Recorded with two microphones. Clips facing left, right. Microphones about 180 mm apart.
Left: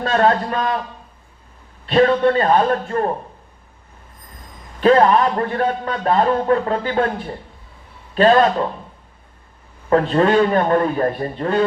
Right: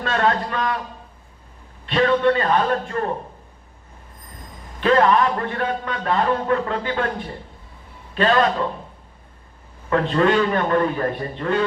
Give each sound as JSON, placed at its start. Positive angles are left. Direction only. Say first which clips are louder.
{"t": 0.0, "sound": "a man's voice", "louder": "left 4 dB", "side_deg": 40}
{"t": 1.9, "sound": "a man's voice", "louder": "left 3 dB", "side_deg": 35}
{"t": 4.8, "sound": "a man's voice", "louder": "left 3 dB", "side_deg": 40}
{"t": 8.1, "sound": "a man's voice", "louder": "left 5 dB", "side_deg": 35}
{"t": 9.9, "sound": "a man's voice", "louder": "left 3 dB", "side_deg": 35}